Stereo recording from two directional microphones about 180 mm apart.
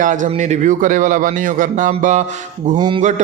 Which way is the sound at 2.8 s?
25° right (ahead or behind).